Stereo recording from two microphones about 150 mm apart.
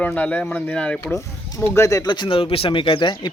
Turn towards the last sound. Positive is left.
turn(degrees=35)  # may be behind; listen again after turning